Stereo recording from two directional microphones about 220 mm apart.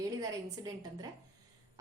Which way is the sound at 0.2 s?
15° right (ahead or behind).